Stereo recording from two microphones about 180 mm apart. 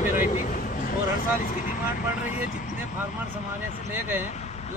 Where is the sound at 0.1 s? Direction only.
45° left (ahead or behind).